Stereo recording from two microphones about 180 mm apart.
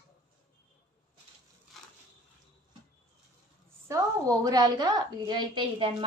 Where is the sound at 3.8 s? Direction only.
20° right (ahead or behind).